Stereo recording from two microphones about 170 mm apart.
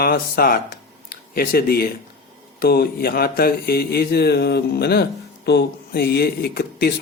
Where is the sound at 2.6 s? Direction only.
65° left (ahead or behind).